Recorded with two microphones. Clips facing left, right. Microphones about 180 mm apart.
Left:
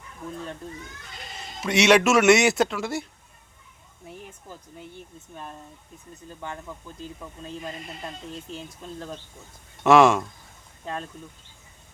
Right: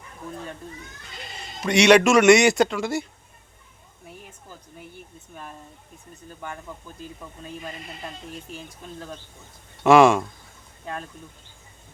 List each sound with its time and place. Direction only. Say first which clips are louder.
1.6 s speech: right 3 dB; 5° left (ahead or behind)
8.3 s speech: left 1 dB; 25° left (ahead or behind)
9.8 s speech: right 2 dB; centre (ahead or behind)